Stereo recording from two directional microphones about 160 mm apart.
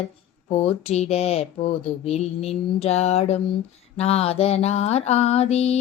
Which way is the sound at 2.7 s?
40° left (ahead or behind).